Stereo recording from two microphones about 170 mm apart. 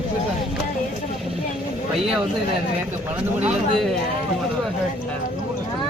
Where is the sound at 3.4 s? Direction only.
Centre (ahead or behind).